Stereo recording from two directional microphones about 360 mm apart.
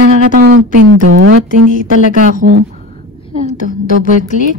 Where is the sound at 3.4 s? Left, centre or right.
Left.